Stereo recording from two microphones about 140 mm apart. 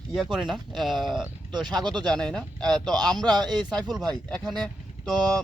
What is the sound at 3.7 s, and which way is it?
Speech, centre (ahead or behind).